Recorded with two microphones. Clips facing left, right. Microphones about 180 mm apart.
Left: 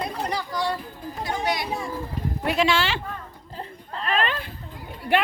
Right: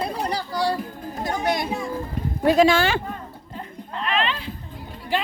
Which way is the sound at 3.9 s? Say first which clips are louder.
Even; 40° left (ahead or behind).